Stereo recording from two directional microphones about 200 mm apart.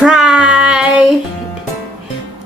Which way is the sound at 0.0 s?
5° right (ahead or behind).